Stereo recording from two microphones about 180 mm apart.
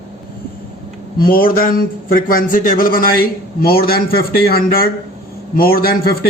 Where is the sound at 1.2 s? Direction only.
55° left (ahead or behind).